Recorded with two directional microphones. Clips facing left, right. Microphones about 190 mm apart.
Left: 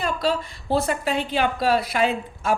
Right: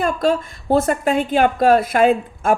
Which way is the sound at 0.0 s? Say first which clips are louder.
Right 6 dB; 50° right (ahead or behind).